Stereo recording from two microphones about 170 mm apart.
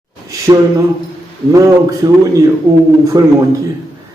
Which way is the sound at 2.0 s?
20° right (ahead or behind).